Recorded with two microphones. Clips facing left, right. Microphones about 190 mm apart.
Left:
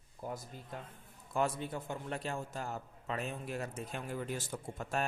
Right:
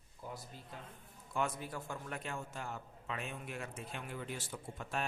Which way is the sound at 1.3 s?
35° left (ahead or behind).